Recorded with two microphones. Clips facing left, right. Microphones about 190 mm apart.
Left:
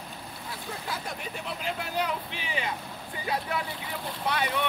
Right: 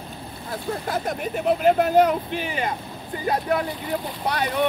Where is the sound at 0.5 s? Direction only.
50° right (ahead or behind).